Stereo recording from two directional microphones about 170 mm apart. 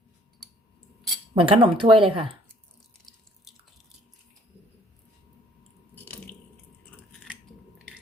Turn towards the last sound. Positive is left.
turn(degrees=10)  # may be behind; listen again after turning